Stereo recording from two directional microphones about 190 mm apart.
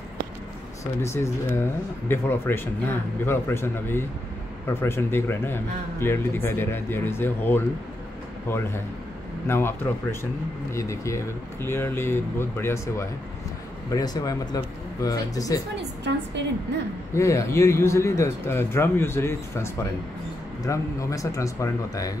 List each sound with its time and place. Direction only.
1.0 s speech: 15° left (ahead or behind)
16.4 s a woman's voice: 65° right (ahead or behind)
17.1 s speech: 15° left (ahead or behind)